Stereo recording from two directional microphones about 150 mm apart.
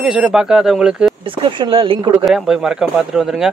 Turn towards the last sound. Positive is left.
turn(degrees=-5)  # may be behind; listen again after turning